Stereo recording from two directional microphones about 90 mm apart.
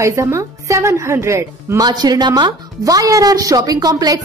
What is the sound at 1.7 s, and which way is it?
A woman's voice, 50° right (ahead or behind).